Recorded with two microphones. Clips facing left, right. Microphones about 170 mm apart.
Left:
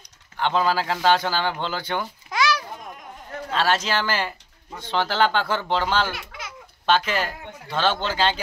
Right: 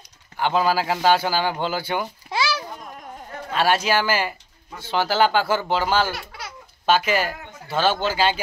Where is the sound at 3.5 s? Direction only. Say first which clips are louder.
Right 3 dB; 10° right (ahead or behind).